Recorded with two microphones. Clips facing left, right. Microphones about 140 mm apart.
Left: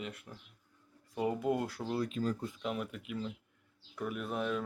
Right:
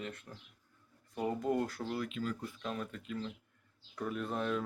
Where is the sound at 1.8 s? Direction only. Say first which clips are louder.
Left 3 dB; 30° left (ahead or behind).